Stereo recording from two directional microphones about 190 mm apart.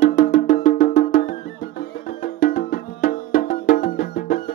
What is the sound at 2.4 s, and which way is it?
Music, 50° left (ahead or behind).